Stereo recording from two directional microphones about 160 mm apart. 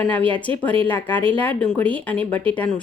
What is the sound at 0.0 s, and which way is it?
A woman's voice, 10° left (ahead or behind).